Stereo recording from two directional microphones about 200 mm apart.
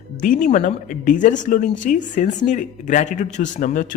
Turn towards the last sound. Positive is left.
turn(degrees=40)  # may be behind; listen again after turning